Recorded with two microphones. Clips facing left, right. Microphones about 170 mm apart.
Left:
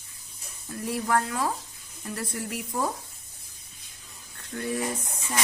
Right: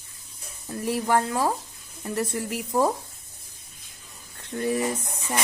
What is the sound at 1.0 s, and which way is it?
Speech, 25° right (ahead or behind).